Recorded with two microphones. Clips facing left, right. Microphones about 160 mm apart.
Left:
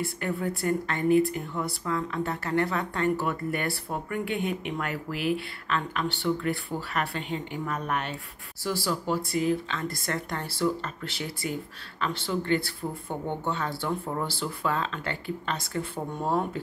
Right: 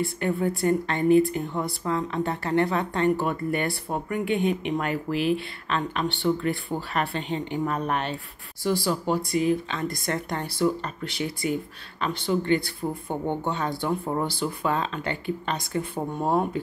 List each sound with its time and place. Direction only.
0.0 s a woman's voice: 25° right (ahead or behind)